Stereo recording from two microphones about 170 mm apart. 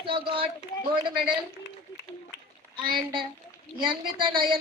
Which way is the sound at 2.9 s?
30° right (ahead or behind).